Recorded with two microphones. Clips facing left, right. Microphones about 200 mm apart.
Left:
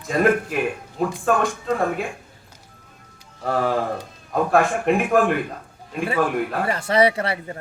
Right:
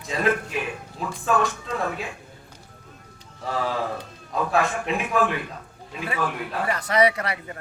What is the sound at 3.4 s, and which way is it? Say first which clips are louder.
A man's voice: left 5 dB; 55° left (ahead or behind).